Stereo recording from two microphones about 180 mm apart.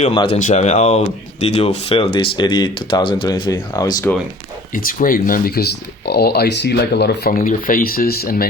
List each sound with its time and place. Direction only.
0.0 s speech: 30° left (ahead or behind)
4.7 s speech: 50° left (ahead or behind)